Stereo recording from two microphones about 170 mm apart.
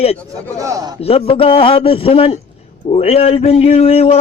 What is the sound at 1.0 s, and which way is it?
A man's voice, 35° left (ahead or behind).